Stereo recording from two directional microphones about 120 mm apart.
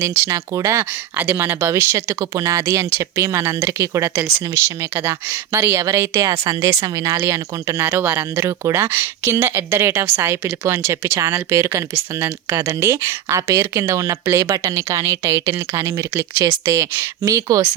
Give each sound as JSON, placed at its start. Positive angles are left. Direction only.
{"t": 0.3, "sound": "speech", "side_deg": -25}